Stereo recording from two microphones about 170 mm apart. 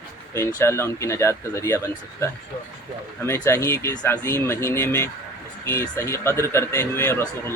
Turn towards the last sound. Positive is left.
turn(degrees=15)  # may be behind; listen again after turning